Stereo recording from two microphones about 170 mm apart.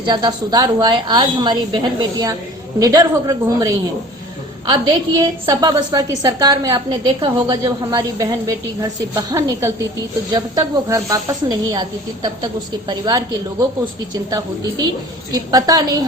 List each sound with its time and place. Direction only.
0.0 s a woman's voice: 25° right (ahead or behind)